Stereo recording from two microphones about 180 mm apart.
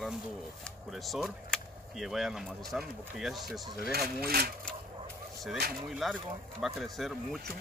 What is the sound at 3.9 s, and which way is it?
Speech, 60° right (ahead or behind).